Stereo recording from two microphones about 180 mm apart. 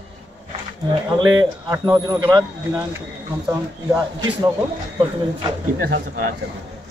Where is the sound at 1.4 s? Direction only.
20° right (ahead or behind).